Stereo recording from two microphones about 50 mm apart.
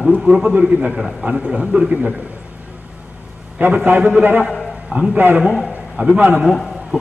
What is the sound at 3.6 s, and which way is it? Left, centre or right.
A man's voice, right.